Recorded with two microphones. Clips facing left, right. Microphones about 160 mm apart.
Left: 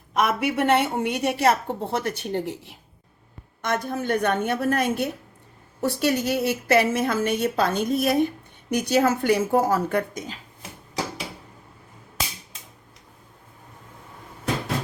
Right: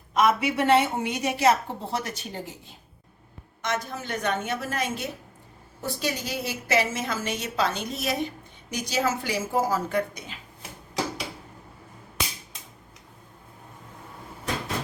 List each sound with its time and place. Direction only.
0.2 s a woman's voice: 55° left (ahead or behind)
3.6 s a woman's voice: 55° left (ahead or behind)